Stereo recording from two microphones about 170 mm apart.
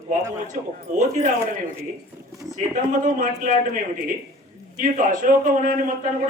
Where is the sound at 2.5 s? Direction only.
45° right (ahead or behind).